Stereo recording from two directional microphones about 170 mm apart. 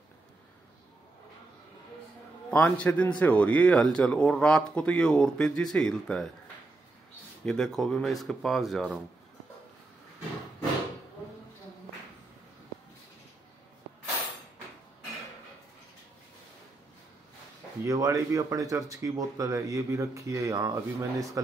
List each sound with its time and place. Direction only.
2.5 s a man's voice: 10° left (ahead or behind)
7.4 s speech: centre (ahead or behind)
17.8 s speech: 20° right (ahead or behind)